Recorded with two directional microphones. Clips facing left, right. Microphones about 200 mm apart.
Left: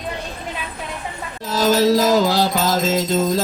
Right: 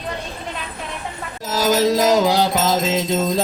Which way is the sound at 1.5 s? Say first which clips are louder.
Left 1 dB; 15° right (ahead or behind).